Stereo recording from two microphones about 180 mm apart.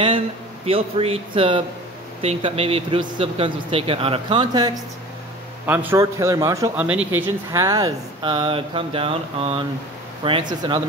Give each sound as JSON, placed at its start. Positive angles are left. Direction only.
{"t": 0.7, "sound": "speech", "side_deg": -30}
{"t": 5.7, "sound": "a man's voice", "side_deg": -10}